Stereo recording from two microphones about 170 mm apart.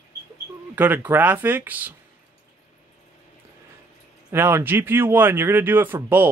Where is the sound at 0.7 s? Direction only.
10° right (ahead or behind).